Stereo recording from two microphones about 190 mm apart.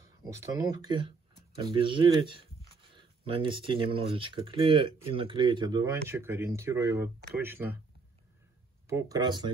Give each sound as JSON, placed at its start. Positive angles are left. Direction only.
{"t": 0.2, "sound": "speech", "side_deg": -15}
{"t": 8.8, "sound": "speech", "side_deg": -15}